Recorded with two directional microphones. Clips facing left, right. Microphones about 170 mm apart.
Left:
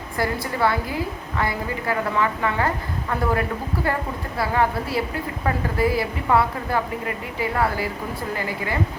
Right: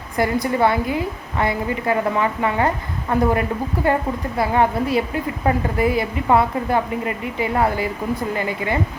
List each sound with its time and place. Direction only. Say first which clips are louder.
0.2 s a woman's voice: right 5 dB; 20° right (ahead or behind)